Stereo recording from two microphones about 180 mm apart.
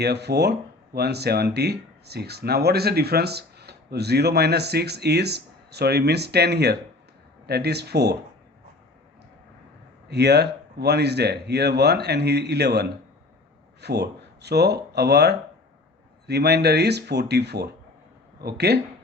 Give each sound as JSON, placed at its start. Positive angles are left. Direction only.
{"t": 0.0, "sound": "speech", "side_deg": -65}
{"t": 10.1, "sound": "speech", "side_deg": -65}